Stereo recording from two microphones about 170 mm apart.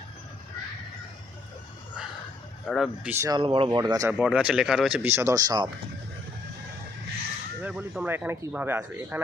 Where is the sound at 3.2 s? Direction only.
30° right (ahead or behind).